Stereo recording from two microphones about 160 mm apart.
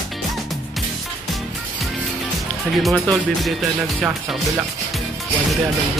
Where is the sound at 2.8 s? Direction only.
Centre (ahead or behind).